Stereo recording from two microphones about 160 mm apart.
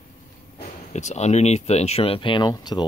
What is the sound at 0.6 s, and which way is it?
Speech, 45° left (ahead or behind).